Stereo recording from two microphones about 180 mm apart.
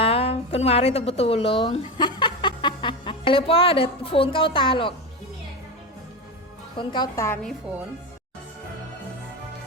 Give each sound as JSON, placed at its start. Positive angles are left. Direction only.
{"t": 0.0, "sound": "a woman's voice", "side_deg": 35}
{"t": 6.7, "sound": "a woman's voice", "side_deg": 25}